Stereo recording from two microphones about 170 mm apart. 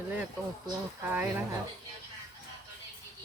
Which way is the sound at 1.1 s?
10° right (ahead or behind).